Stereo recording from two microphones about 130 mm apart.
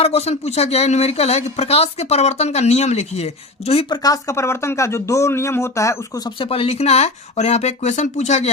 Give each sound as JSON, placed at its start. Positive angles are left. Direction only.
{"t": 0.0, "sound": "speech", "side_deg": 55}
{"t": 3.8, "sound": "speech", "side_deg": 30}
{"t": 6.4, "sound": "speech", "side_deg": 45}